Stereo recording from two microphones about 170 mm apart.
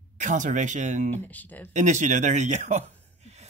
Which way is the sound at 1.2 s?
10° left (ahead or behind).